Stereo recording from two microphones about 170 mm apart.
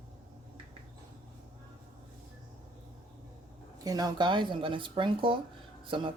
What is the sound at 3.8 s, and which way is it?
Speech, 20° right (ahead or behind).